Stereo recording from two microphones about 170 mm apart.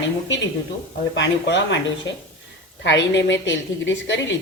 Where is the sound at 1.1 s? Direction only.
90° left.